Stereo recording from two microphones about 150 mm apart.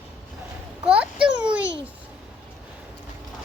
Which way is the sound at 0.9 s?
10° right (ahead or behind).